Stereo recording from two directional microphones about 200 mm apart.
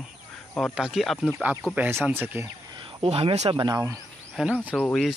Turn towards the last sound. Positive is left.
turn(degrees=5)  # may be behind; listen again after turning